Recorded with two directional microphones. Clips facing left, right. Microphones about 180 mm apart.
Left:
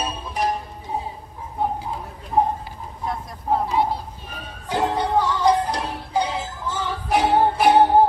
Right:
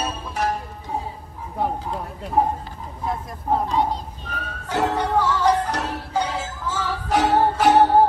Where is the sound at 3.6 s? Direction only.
10° left (ahead or behind).